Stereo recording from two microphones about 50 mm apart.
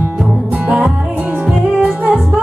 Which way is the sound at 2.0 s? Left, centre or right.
Right.